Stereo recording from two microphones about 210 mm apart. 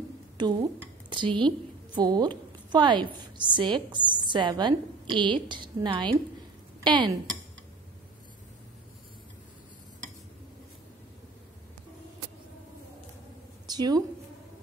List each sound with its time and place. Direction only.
0.4 s a woman's voice: 20° right (ahead or behind)
13.7 s a woman's voice: 20° right (ahead or behind)